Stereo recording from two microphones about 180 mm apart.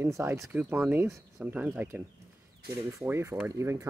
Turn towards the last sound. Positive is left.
turn(degrees=-15)  # may be behind; listen again after turning